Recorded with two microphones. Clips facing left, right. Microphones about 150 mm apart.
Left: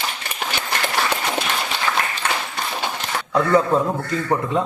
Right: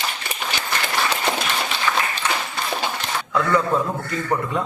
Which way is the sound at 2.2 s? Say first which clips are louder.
Left 1 dB; 55° left (ahead or behind).